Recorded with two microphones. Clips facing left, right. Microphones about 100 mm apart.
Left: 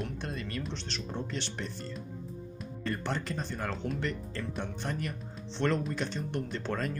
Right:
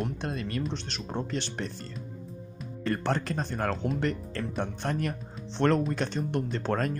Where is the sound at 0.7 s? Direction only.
50° right (ahead or behind).